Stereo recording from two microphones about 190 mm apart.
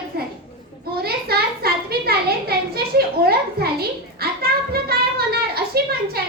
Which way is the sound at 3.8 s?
55° right (ahead or behind).